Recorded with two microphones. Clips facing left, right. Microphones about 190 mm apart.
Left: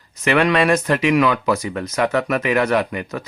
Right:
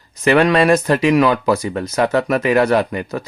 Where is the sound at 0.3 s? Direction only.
35° right (ahead or behind).